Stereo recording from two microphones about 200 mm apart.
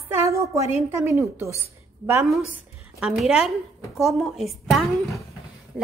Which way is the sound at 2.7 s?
5° right (ahead or behind).